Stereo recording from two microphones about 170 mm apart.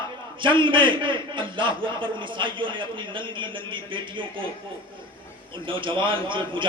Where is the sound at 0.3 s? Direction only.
30° right (ahead or behind).